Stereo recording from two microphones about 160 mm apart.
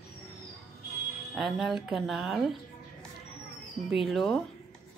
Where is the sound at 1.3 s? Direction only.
Centre (ahead or behind).